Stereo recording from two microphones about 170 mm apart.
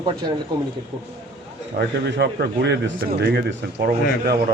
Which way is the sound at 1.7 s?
75° right (ahead or behind).